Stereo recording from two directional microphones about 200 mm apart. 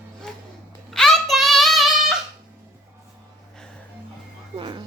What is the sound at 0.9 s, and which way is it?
Child singing, centre (ahead or behind).